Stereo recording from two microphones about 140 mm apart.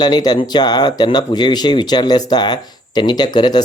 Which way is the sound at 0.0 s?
30° left (ahead or behind).